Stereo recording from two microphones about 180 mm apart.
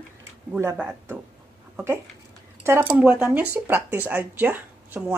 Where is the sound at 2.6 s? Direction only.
10° right (ahead or behind).